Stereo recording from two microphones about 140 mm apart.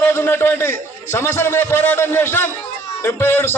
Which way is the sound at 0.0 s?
15° left (ahead or behind).